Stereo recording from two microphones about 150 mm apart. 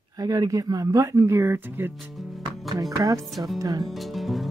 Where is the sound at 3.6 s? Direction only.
25° right (ahead or behind).